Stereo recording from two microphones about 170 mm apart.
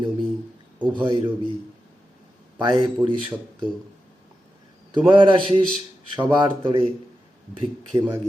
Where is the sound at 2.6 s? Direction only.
30° right (ahead or behind).